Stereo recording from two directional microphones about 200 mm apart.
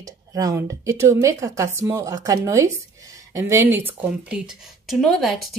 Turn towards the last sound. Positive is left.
turn(degrees=0)  # may be behind; listen again after turning